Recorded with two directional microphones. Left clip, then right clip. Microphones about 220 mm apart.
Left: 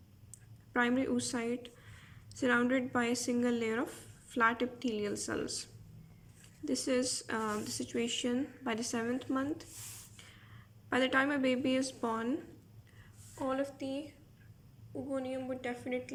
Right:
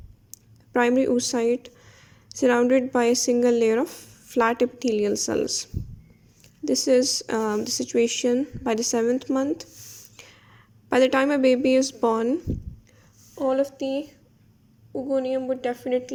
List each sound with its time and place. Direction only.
0.7 s a woman's voice: 30° right (ahead or behind)
13.4 s speech: 35° right (ahead or behind)
15.1 s speech: 35° right (ahead or behind)